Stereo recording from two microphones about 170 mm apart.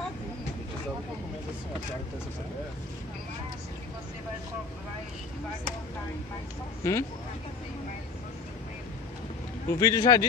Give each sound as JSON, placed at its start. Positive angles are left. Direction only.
{"t": 6.8, "sound": "speech", "side_deg": 15}
{"t": 9.7, "sound": "a man's voice", "side_deg": 20}